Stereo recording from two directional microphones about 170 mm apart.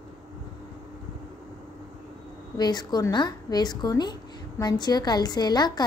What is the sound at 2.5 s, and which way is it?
A woman's voice, 25° left (ahead or behind).